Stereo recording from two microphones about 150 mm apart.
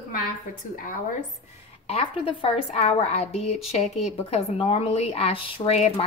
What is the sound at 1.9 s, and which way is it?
A woman's voice, 40° left (ahead or behind).